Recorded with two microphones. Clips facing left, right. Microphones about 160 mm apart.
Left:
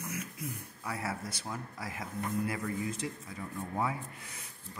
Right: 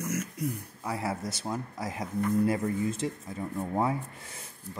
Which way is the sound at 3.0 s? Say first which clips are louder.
Right 6 dB; 35° right (ahead or behind).